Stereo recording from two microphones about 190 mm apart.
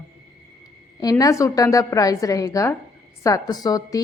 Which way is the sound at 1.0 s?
20° left (ahead or behind).